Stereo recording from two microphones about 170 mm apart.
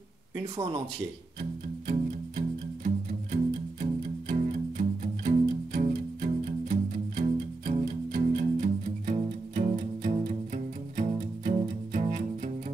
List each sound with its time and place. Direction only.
0.4 s speech: 30° right (ahead or behind)
1.4 s music: 50° right (ahead or behind)